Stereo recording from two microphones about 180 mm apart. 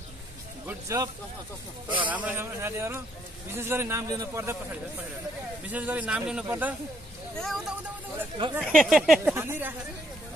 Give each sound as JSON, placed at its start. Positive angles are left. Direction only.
{"t": 0.7, "sound": "speech", "side_deg": -20}
{"t": 5.7, "sound": "speech", "side_deg": -10}
{"t": 9.3, "sound": "speech", "side_deg": -15}